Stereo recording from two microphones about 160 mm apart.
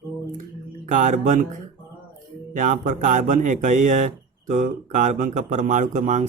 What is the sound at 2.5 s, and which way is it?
Speech, 55° right (ahead or behind).